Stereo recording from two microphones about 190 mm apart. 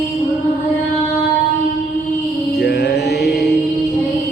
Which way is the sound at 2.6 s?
60° left (ahead or behind).